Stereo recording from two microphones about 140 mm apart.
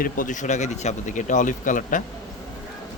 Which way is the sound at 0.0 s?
70° left (ahead or behind).